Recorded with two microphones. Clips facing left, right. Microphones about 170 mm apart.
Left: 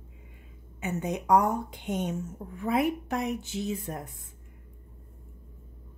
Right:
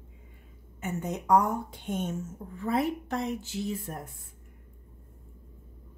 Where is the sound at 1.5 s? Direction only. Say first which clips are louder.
Left 1 dB; 15° left (ahead or behind).